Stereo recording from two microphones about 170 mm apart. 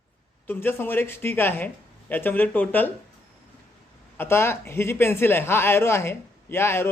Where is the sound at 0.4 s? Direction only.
10° left (ahead or behind).